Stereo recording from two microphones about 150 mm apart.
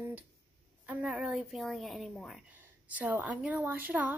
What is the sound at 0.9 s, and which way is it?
A woman's voice, 5° right (ahead or behind).